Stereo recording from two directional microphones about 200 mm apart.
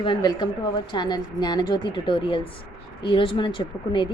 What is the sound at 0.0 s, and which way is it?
Speech, 20° left (ahead or behind).